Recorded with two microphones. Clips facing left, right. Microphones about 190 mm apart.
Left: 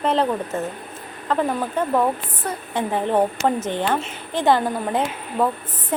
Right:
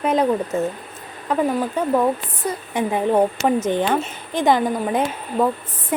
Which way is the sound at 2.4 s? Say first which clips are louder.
Right 2 dB; 15° right (ahead or behind).